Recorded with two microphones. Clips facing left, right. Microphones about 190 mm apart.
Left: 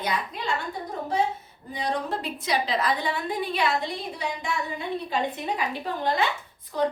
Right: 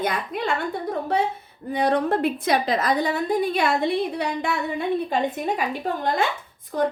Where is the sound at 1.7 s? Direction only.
60° right (ahead or behind).